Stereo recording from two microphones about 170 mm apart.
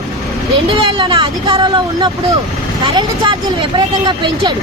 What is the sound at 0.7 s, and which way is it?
Speech, 30° right (ahead or behind).